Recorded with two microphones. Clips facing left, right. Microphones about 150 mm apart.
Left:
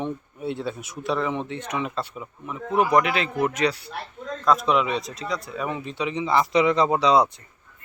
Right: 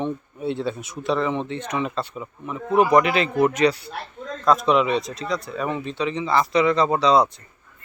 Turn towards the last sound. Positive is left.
turn(degrees=10)  # may be behind; listen again after turning